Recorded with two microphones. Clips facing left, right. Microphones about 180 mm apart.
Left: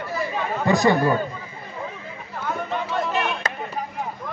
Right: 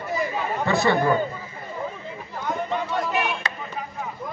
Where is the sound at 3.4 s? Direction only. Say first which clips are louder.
Left 3 dB; 45° left (ahead or behind).